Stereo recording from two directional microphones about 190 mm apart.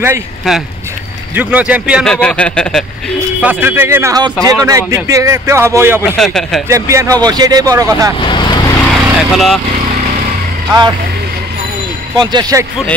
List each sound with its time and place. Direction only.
0.5 s speech: centre (ahead or behind)
2.1 s speech: 5° left (ahead or behind)
3.4 s speech: 10° right (ahead or behind)
6.1 s speech: centre (ahead or behind)
6.7 s speech: 15° right (ahead or behind)
8.3 s vehicle: 25° left (ahead or behind)
8.8 s vehicle: centre (ahead or behind)
12.2 s speech: 20° right (ahead or behind)